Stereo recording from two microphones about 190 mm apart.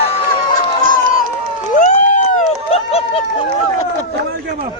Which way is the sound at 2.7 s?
30° left (ahead or behind).